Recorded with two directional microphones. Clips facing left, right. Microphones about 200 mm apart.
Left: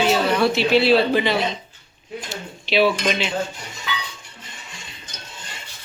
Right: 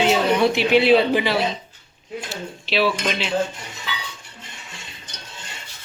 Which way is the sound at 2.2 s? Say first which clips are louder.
Even; centre (ahead or behind).